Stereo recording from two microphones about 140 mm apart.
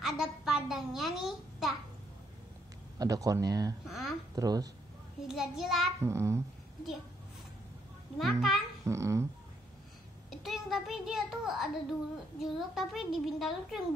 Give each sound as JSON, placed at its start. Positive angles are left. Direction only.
{"t": 0.0, "sound": "a child's voice", "side_deg": -5}
{"t": 3.0, "sound": "speech", "side_deg": -25}
{"t": 3.8, "sound": "a woman's voice", "side_deg": 0}
{"t": 4.4, "sound": "speech", "side_deg": -25}
{"t": 5.3, "sound": "a woman's voice", "side_deg": -5}
{"t": 5.9, "sound": "speech", "side_deg": -20}
{"t": 8.2, "sound": "a woman's voice", "side_deg": 0}
{"t": 8.8, "sound": "speech", "side_deg": -20}
{"t": 10.4, "sound": "a woman's voice", "side_deg": 0}